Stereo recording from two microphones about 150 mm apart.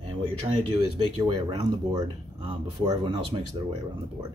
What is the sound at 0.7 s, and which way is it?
Speech, 30° right (ahead or behind).